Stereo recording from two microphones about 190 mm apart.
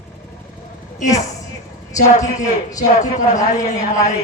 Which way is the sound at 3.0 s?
40° left (ahead or behind).